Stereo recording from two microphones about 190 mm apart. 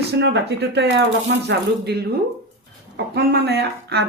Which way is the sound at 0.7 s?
65° right (ahead or behind).